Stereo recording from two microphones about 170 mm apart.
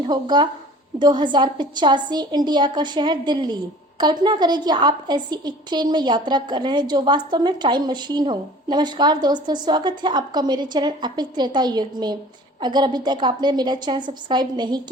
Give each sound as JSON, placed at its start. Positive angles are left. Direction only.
{"t": 0.1, "sound": "a woman's voice", "side_deg": -25}